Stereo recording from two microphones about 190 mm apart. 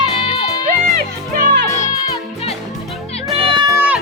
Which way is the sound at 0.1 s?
30° left (ahead or behind).